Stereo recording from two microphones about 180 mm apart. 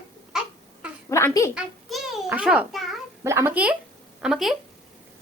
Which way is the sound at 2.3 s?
5° right (ahead or behind).